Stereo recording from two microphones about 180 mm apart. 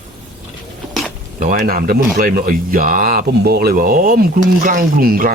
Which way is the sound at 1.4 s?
50° right (ahead or behind).